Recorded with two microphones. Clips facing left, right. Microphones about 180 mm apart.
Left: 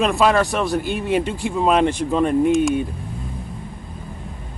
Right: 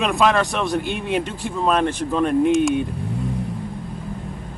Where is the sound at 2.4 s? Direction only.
Centre (ahead or behind).